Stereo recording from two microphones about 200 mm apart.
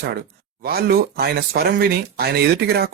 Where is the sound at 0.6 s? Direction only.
50° right (ahead or behind).